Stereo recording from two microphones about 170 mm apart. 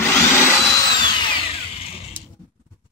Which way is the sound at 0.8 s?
25° left (ahead or behind).